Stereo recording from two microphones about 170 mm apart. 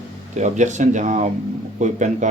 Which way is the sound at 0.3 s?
45° right (ahead or behind).